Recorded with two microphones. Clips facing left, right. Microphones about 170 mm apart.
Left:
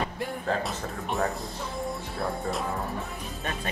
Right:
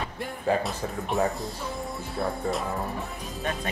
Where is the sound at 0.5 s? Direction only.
10° right (ahead or behind).